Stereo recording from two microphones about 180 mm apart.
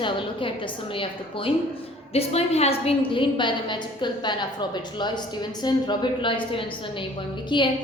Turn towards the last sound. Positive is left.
turn(degrees=25)  # may be behind; listen again after turning